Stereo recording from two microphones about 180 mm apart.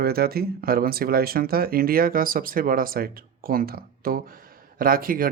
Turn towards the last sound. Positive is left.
turn(degrees=-50)  # may be behind; listen again after turning